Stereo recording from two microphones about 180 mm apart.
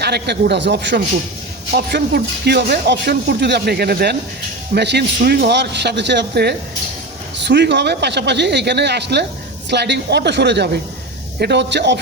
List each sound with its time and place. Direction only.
0.0 s speech: 65° right (ahead or behind)
1.7 s speech: 60° right (ahead or behind)